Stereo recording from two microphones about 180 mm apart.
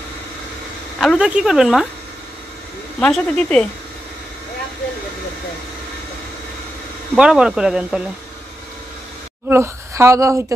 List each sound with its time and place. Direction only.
0.9 s speech: centre (ahead or behind)
3.0 s speech: 5° left (ahead or behind)
7.2 s speech: 5° right (ahead or behind)
9.5 s a woman's voice: 15° right (ahead or behind)